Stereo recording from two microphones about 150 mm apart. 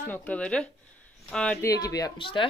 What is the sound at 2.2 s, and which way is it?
Speech, 35° left (ahead or behind).